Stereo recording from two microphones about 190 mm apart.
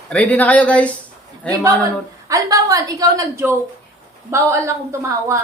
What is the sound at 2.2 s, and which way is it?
A woman's voice, 15° right (ahead or behind).